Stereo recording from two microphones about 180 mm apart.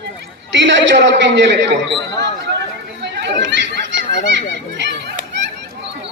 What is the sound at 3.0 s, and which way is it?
Chatter, 75° right (ahead or behind).